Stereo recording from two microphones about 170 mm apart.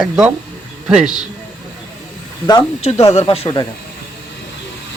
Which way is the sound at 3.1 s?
35° left (ahead or behind).